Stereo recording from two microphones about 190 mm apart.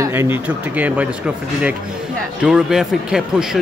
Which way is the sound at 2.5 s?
Centre (ahead or behind).